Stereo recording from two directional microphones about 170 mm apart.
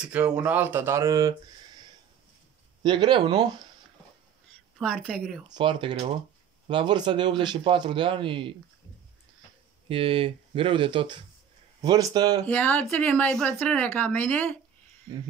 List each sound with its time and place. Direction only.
0.0 s speech: 5° right (ahead or behind)
2.8 s a man's voice: 25° right (ahead or behind)
4.7 s a woman's voice: centre (ahead or behind)
5.5 s a man's voice: 30° right (ahead or behind)
9.8 s a man's voice: 35° right (ahead or behind)
12.4 s speech: 10° left (ahead or behind)